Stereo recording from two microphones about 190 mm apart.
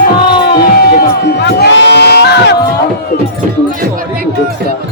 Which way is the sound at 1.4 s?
65° left (ahead or behind).